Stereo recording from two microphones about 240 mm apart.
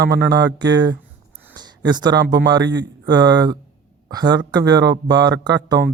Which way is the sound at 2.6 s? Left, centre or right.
Right.